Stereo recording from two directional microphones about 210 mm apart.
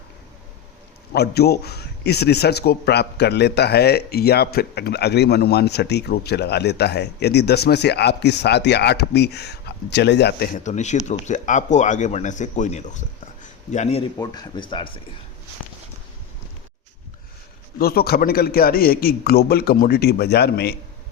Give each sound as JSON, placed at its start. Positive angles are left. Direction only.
{"t": 1.1, "sound": "a man's voice", "side_deg": 50}
{"t": 10.6, "sound": "speech", "side_deg": 35}
{"t": 13.4, "sound": "a sound", "side_deg": 35}
{"t": 14.2, "sound": "speech", "side_deg": 20}
{"t": 17.7, "sound": "a man's voice", "side_deg": 45}